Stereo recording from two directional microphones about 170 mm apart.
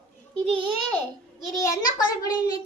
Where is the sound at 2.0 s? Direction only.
25° left (ahead or behind).